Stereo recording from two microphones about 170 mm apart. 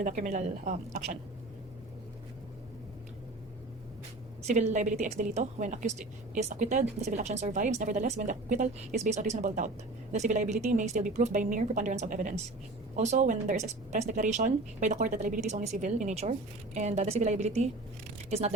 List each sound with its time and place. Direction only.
0.0 s a woman's voice: 45° right (ahead or behind)
4.4 s a woman's voice: 45° right (ahead or behind)